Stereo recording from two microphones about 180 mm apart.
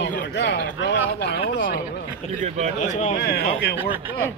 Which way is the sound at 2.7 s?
40° left (ahead or behind).